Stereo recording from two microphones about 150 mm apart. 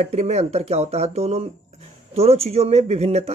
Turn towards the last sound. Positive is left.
turn(degrees=-45)  # may be behind; listen again after turning